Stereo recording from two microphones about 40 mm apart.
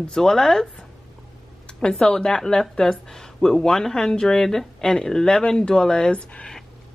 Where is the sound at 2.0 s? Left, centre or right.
Centre.